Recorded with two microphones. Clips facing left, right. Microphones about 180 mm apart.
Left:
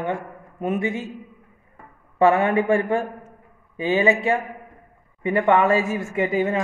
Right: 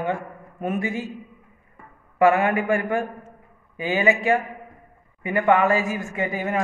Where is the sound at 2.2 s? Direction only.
25° left (ahead or behind).